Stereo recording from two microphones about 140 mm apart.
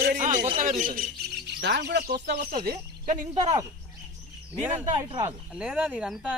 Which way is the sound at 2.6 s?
70° right (ahead or behind).